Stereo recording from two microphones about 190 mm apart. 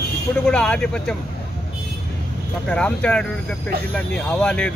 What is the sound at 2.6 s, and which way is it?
Speech, 5° left (ahead or behind).